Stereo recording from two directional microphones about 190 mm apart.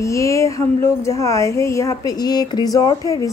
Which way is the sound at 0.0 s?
15° left (ahead or behind).